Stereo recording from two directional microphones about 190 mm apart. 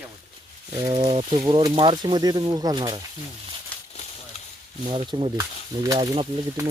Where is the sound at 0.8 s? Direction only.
25° right (ahead or behind).